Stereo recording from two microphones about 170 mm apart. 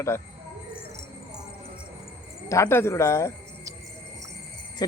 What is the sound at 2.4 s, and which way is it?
Speech, 15° left (ahead or behind).